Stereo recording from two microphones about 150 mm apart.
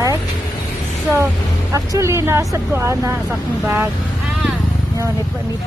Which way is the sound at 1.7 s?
20° right (ahead or behind).